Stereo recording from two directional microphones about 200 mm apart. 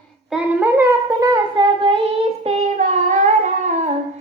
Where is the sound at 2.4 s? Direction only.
35° right (ahead or behind).